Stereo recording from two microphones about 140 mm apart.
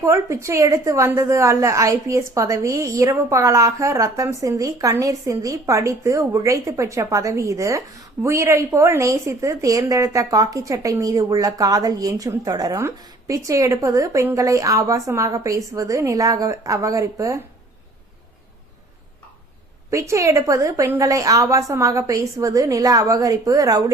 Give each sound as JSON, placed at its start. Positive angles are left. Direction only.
{"t": 0.0, "sound": "a woman's voice", "side_deg": -20}
{"t": 19.9, "sound": "a woman's voice", "side_deg": -20}